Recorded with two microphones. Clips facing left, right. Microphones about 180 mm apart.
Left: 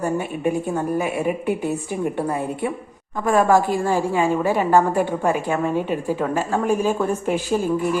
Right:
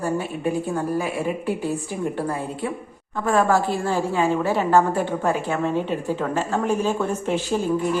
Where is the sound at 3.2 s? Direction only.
15° left (ahead or behind).